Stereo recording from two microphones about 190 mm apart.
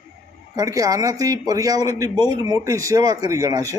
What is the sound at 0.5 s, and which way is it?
A man's voice, 20° right (ahead or behind).